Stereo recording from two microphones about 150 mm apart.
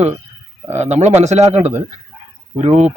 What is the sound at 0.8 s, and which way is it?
Speech, 50° right (ahead or behind).